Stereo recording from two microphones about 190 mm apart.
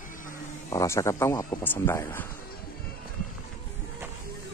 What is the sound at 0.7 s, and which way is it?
Speech, 15° left (ahead or behind).